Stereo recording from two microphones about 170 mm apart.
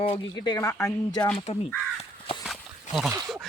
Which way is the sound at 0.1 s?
25° left (ahead or behind).